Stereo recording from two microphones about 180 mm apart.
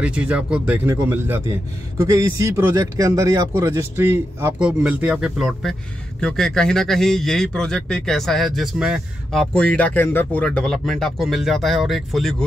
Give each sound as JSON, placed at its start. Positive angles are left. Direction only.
{"t": 0.0, "sound": "a man's voice", "side_deg": -5}